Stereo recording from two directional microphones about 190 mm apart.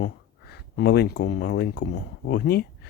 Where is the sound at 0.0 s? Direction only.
55° left (ahead or behind).